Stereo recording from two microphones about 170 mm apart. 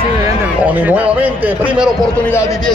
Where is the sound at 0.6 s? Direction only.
10° right (ahead or behind).